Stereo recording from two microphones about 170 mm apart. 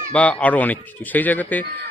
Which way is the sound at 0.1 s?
10° left (ahead or behind).